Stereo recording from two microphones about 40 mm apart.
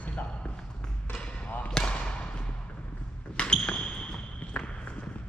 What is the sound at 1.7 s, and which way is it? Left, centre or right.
Basketball bounce, left.